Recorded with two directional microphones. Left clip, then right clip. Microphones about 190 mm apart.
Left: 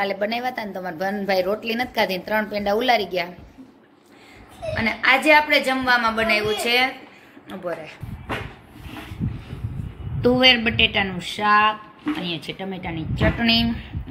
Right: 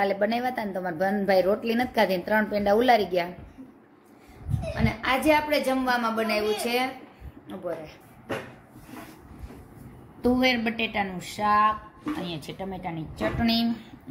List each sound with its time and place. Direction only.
0.0 s a woman's voice: 45° right (ahead or behind)
4.7 s a woman's voice: centre (ahead or behind)
10.2 s a woman's voice: centre (ahead or behind)